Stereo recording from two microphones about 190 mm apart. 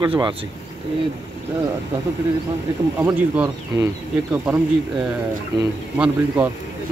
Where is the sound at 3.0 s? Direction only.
10° right (ahead or behind).